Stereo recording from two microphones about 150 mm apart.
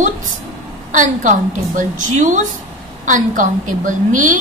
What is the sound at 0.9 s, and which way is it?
A woman's voice, 55° right (ahead or behind).